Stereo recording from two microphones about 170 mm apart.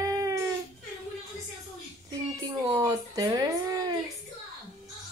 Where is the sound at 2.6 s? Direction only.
20° right (ahead or behind).